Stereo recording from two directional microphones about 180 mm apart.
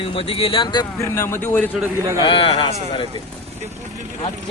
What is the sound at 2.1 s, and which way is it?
Speech, 30° left (ahead or behind).